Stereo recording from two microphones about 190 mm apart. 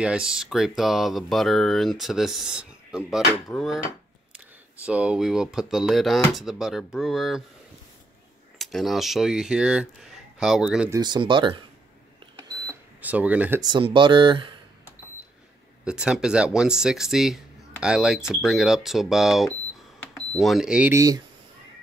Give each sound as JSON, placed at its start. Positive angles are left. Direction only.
{"t": 0.0, "sound": "speech", "side_deg": -5}
{"t": 4.8, "sound": "speech", "side_deg": -5}
{"t": 8.5, "sound": "speech", "side_deg": 0}
{"t": 10.9, "sound": "speech", "side_deg": -20}
{"t": 12.4, "sound": "cash register", "side_deg": -15}
{"t": 13.6, "sound": "speech", "side_deg": -25}
{"t": 15.8, "sound": "speech", "side_deg": -5}